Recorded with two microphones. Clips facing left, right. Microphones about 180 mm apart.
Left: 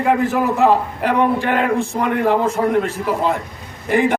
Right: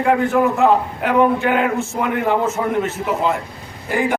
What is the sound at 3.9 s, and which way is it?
Speech, centre (ahead or behind).